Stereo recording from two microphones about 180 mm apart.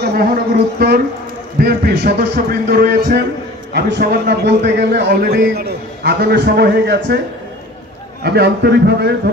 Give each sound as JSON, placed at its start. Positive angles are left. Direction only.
{"t": 0.0, "sound": "a man's voice", "side_deg": -55}
{"t": 8.2, "sound": "a man's voice", "side_deg": -65}